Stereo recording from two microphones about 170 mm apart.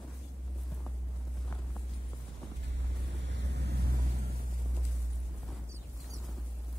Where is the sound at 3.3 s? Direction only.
90° right.